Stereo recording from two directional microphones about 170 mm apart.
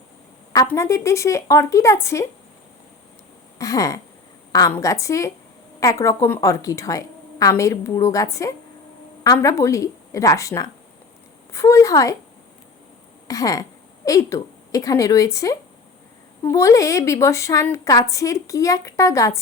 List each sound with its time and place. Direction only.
0.5 s speech: 20° left (ahead or behind)
3.6 s a sound: 20° left (ahead or behind)
4.7 s a woman's voice: 20° left (ahead or behind)
13.2 s a woman's voice: 20° left (ahead or behind)